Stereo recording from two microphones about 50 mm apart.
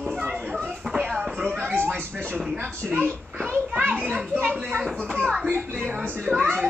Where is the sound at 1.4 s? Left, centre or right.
Right.